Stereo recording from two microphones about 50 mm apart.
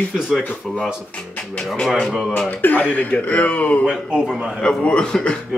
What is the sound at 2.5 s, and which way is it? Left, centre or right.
Speech, left.